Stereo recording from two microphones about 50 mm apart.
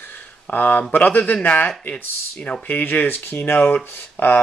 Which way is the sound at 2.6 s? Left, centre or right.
Left.